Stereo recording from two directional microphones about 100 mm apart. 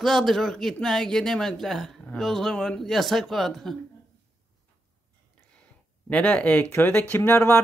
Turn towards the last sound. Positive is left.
turn(degrees=25)  # may be behind; listen again after turning